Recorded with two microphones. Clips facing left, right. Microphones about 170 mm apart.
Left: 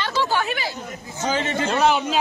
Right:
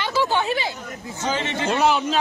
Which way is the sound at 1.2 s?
40° left (ahead or behind).